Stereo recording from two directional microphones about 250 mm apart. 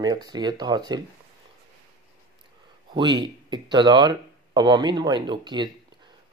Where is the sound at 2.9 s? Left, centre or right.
Centre.